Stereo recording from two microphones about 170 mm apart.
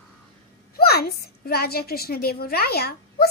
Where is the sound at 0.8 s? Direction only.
65° left (ahead or behind).